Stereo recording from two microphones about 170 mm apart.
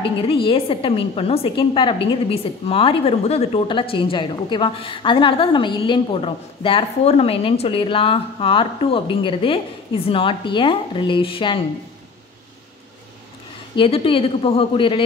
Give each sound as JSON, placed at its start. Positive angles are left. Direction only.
{"t": 0.0, "sound": "a woman's voice", "side_deg": 30}
{"t": 13.7, "sound": "a woman's voice", "side_deg": 30}